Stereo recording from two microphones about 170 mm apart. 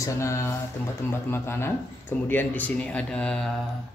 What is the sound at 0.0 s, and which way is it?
Speech, 15° left (ahead or behind).